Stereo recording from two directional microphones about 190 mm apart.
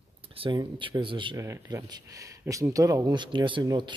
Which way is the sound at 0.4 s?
25° right (ahead or behind).